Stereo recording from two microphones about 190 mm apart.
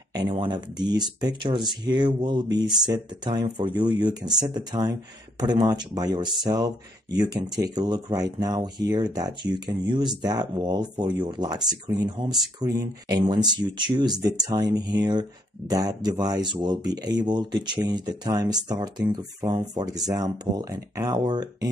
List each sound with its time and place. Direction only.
0.3 s speech: 25° right (ahead or behind)